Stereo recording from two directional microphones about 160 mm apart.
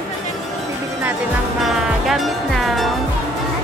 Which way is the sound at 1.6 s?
Centre (ahead or behind).